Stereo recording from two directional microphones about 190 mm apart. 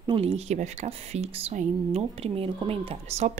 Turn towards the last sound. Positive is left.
turn(degrees=-30)  # may be behind; listen again after turning